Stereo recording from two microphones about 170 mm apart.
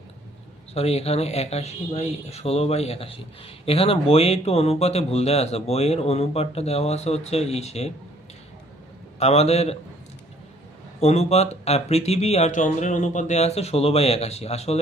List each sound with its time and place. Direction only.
0.7 s speech: 35° left (ahead or behind)
9.1 s speech: 40° left (ahead or behind)
11.0 s speech: 40° left (ahead or behind)